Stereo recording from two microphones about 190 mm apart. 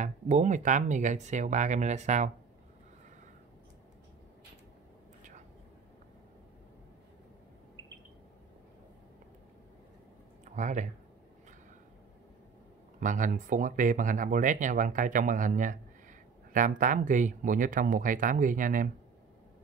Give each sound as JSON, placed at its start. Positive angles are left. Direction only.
{"t": 0.0, "sound": "speech", "side_deg": -40}
{"t": 10.4, "sound": "a sound", "side_deg": -40}
{"t": 13.0, "sound": "speech", "side_deg": -40}